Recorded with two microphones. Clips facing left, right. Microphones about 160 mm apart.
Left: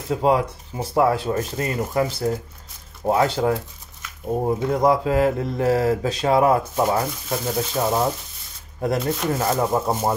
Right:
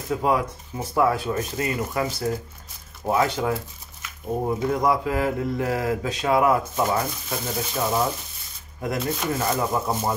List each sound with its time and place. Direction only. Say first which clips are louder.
0.1 s speech: left 3 dB; 30° left (ahead or behind)
8.8 s speech: left 4 dB; 35° left (ahead or behind)